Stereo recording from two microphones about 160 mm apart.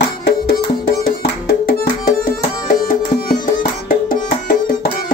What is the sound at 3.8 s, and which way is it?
Music, 60° left (ahead or behind).